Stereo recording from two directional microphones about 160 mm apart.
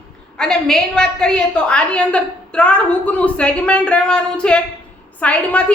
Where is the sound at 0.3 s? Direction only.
5° left (ahead or behind).